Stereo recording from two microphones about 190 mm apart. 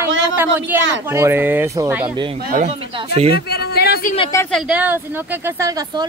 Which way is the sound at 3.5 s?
55° left (ahead or behind).